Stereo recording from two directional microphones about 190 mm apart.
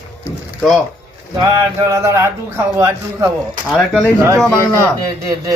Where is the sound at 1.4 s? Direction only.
20° right (ahead or behind).